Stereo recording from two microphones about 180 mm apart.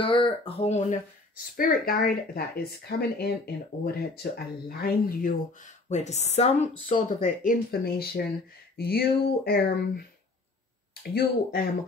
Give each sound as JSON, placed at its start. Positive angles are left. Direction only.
{"t": 0.0, "sound": "speech", "side_deg": 30}
{"t": 1.6, "sound": "speech", "side_deg": 50}